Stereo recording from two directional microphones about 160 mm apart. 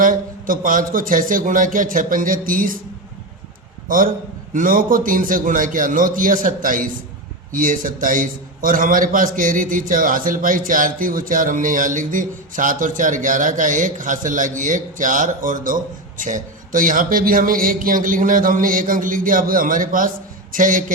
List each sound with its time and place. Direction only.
0.0 s a man's voice: 60° right (ahead or behind)
3.8 s a man's voice: 60° right (ahead or behind)